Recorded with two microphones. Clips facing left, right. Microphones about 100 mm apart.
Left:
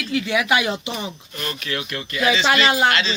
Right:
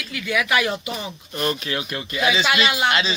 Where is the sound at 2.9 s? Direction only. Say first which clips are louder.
Even; 15° right (ahead or behind).